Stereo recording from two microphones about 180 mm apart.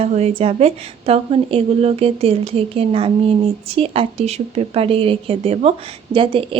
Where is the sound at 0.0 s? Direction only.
35° right (ahead or behind).